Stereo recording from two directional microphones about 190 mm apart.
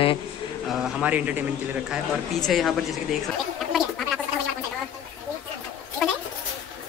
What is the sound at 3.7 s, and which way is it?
Gargling, centre (ahead or behind).